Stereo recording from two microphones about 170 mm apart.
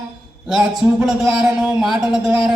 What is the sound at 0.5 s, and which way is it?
A man's voice, 5° right (ahead or behind).